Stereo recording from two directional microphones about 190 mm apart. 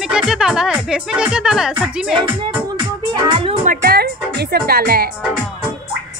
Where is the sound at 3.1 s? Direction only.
25° right (ahead or behind).